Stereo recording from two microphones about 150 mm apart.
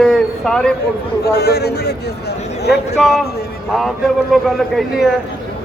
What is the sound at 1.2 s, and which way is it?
Speech, 90° left.